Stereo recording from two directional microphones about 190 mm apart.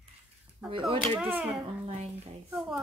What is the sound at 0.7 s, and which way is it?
Speech, 30° right (ahead or behind).